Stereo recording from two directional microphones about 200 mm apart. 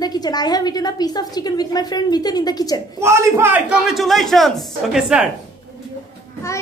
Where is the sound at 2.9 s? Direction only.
15° right (ahead or behind).